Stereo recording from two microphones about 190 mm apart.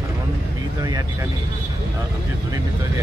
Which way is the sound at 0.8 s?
20° right (ahead or behind).